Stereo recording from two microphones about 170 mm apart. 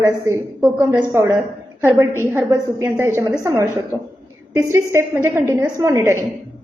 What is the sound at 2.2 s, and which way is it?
A woman's voice, 15° right (ahead or behind).